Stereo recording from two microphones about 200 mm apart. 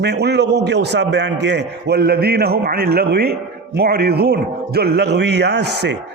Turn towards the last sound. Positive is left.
turn(degrees=-55)  # may be behind; listen again after turning